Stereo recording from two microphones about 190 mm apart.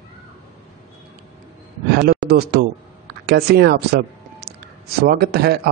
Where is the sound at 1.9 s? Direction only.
55° right (ahead or behind).